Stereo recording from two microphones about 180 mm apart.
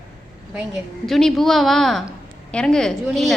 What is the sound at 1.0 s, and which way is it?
A woman's voice, centre (ahead or behind).